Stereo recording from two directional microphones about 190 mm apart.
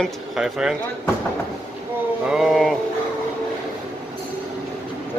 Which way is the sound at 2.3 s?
Centre (ahead or behind).